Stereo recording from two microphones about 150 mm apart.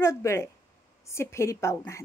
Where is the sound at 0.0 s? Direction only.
20° left (ahead or behind).